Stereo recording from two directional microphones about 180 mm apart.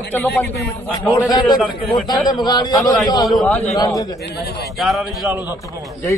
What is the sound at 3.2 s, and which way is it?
Speech, centre (ahead or behind).